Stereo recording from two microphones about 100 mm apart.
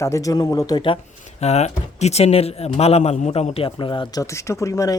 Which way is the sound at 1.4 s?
90° left.